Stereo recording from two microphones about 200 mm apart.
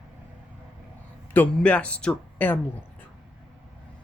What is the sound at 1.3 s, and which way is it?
Speech, 10° left (ahead or behind).